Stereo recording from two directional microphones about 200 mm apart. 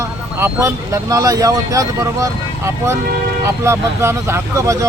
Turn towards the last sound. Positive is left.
turn(degrees=-15)  # may be behind; listen again after turning